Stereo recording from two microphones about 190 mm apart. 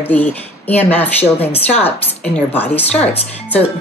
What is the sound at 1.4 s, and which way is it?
Speech, 30° left (ahead or behind).